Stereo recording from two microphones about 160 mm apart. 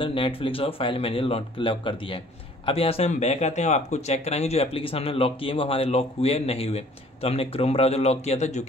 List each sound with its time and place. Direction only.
0.0 s speech: 35° left (ahead or behind)